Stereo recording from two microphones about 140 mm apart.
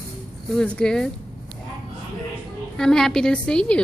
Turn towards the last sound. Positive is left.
turn(degrees=5)  # may be behind; listen again after turning